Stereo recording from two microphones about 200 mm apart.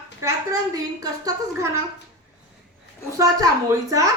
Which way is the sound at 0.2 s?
15° right (ahead or behind).